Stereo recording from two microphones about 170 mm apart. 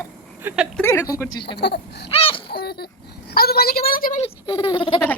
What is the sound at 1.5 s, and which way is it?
Speech, 80° left.